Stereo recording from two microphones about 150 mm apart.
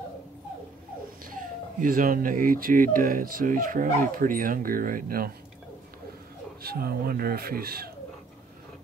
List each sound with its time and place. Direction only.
1.8 s speech: 65° right (ahead or behind)
6.6 s speech: 90° right